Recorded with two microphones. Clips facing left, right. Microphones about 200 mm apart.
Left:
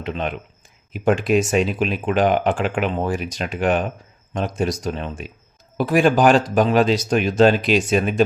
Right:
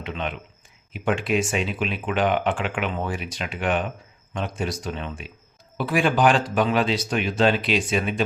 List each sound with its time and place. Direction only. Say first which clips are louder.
0.0 s speech: left 5 dB; 40° left (ahead or behind)